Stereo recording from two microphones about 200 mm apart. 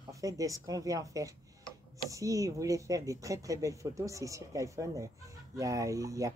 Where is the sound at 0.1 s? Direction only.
15° right (ahead or behind).